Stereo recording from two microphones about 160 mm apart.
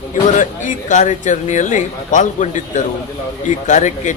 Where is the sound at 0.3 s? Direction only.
50° left (ahead or behind).